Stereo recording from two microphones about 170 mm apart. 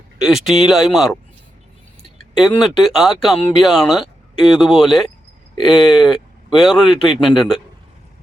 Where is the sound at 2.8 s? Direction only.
Centre (ahead or behind).